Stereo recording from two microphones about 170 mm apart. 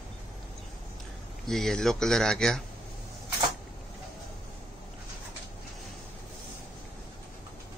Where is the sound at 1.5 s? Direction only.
5° left (ahead or behind).